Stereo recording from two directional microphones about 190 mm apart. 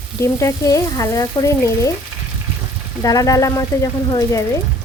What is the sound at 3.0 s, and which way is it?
Frying, 20° left (ahead or behind).